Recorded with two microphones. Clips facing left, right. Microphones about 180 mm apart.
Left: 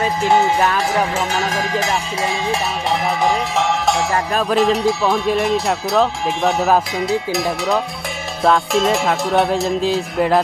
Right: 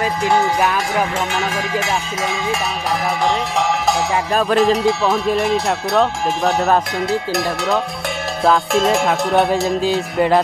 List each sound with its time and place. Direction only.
0.6 s music: centre (ahead or behind)
1.3 s music: 40° left (ahead or behind)
4.1 s music: centre (ahead or behind)